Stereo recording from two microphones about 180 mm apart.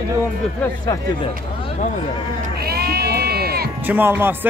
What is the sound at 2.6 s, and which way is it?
Sheep, 60° right (ahead or behind).